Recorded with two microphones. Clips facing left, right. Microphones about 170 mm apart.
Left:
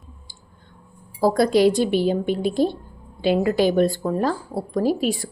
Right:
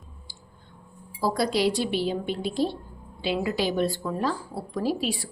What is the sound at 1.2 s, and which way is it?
Speech, 50° left (ahead or behind).